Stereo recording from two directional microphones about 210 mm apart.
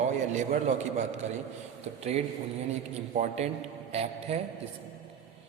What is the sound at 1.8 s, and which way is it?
A man's voice, 30° right (ahead or behind).